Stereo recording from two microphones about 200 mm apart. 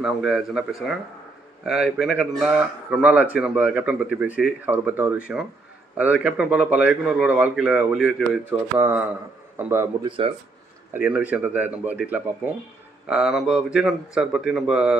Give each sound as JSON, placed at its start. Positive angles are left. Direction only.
{"t": 0.0, "sound": "a man's voice", "side_deg": -5}
{"t": 10.0, "sound": "speech", "side_deg": -25}
{"t": 10.9, "sound": "a man's voice", "side_deg": -10}